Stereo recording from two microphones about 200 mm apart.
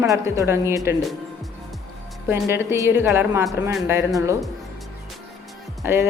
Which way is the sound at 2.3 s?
10° right (ahead or behind).